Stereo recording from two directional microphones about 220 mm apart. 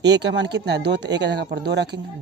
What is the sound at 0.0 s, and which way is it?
Speech, 50° right (ahead or behind).